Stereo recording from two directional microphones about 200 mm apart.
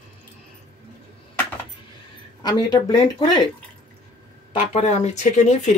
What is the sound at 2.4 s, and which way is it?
Speech, 20° left (ahead or behind).